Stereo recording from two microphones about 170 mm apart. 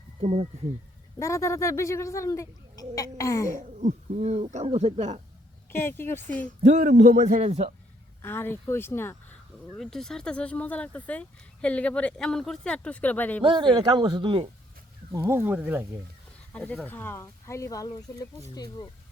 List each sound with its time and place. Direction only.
0.2 s speech: 40° right (ahead or behind)
1.2 s speech: 15° left (ahead or behind)
3.5 s speech: 45° right (ahead or behind)
5.7 s speech: 15° left (ahead or behind)
6.6 s a man's voice: 45° right (ahead or behind)
8.2 s speech: 15° left (ahead or behind)
9.7 s speech: centre (ahead or behind)
13.4 s speech: 30° right (ahead or behind)
15.1 s speech: 15° right (ahead or behind)
16.5 s speech: 5° left (ahead or behind)